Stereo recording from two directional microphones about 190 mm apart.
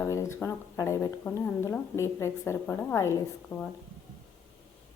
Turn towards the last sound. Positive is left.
turn(degrees=15)  # may be behind; listen again after turning